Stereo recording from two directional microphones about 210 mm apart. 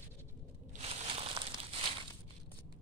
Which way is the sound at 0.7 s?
30° right (ahead or behind).